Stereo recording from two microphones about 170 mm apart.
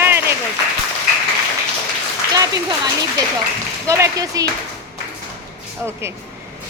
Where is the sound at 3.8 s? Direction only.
20° right (ahead or behind).